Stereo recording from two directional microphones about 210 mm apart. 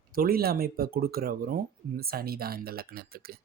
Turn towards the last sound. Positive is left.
turn(degrees=-45)  # may be behind; listen again after turning